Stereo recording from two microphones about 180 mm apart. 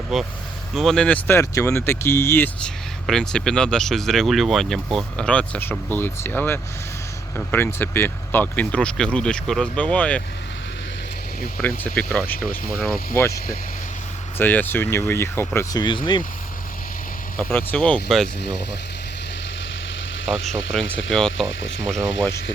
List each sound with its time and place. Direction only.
0.1 s speech: centre (ahead or behind)
11.6 s speech: 10° left (ahead or behind); by 16.2 s 25° left (ahead or behind)
17.3 s speech: 10° left (ahead or behind)
20.4 s speech: centre (ahead or behind)